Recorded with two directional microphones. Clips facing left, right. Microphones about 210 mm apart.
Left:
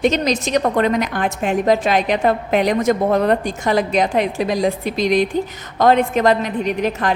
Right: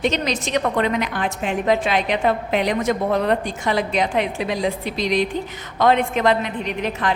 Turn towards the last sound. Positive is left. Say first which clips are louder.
# left 5 dB
turn(degrees=45)  # may be behind; listen again after turning